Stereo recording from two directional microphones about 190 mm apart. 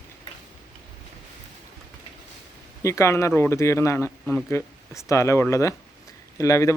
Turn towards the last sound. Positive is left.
turn(degrees=15)  # may be behind; listen again after turning